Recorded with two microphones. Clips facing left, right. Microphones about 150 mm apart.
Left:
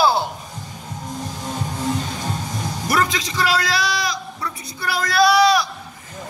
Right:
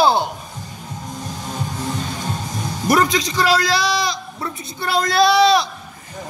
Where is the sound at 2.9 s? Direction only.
20° right (ahead or behind).